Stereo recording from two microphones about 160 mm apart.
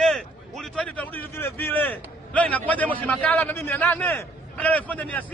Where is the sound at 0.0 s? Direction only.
5° left (ahead or behind).